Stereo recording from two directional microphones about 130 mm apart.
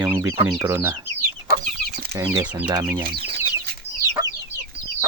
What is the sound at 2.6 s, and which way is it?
Speech, 35° right (ahead or behind).